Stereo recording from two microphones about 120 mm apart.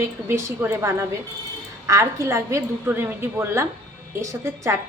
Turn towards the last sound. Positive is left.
turn(degrees=-25)  # may be behind; listen again after turning